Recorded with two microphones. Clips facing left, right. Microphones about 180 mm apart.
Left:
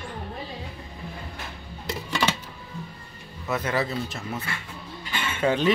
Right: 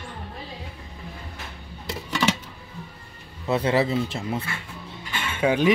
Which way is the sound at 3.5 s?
30° right (ahead or behind).